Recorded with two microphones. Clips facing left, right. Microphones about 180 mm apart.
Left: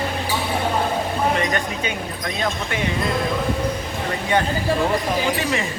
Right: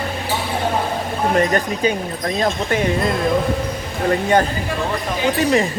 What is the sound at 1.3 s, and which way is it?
Speech, 35° right (ahead or behind).